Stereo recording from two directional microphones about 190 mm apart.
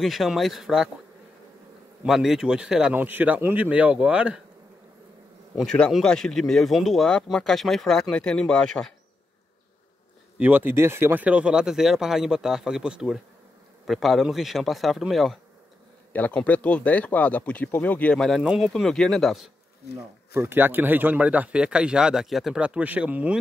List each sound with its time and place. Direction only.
0.0 s speech: centre (ahead or behind)
2.0 s speech: centre (ahead or behind)
5.6 s speech: 5° left (ahead or behind)
10.3 s speech: 10° right (ahead or behind)
20.3 s speech: 10° right (ahead or behind)